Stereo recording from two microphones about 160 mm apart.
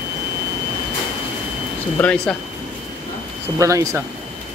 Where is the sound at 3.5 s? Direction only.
20° right (ahead or behind).